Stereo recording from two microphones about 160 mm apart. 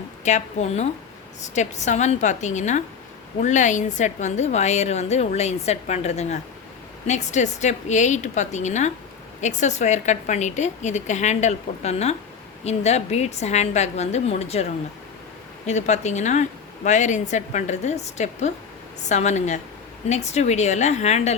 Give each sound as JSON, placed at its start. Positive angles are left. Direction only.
{"t": 0.3, "sound": "a woman's voice", "side_deg": 45}